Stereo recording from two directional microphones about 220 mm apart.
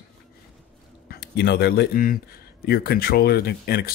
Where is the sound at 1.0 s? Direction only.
50° left (ahead or behind).